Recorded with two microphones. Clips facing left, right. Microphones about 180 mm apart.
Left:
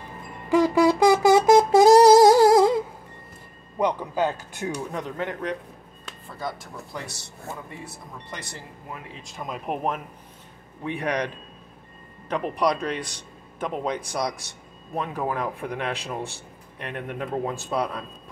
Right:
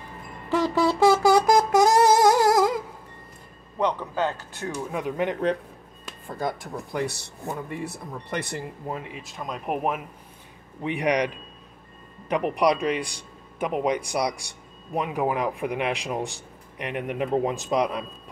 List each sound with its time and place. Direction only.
0.5 s a sound: 10° left (ahead or behind); by 2.8 s 30° left (ahead or behind)
3.7 s speech: 10° left (ahead or behind)
4.9 s speech: 15° right (ahead or behind)
6.2 s speech: 50° right (ahead or behind)
8.3 s speech: 55° right (ahead or behind)
9.1 s speech: centre (ahead or behind)
10.8 s speech: 15° right (ahead or behind)